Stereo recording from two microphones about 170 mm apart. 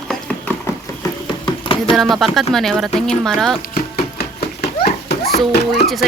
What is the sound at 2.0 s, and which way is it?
Speech, centre (ahead or behind).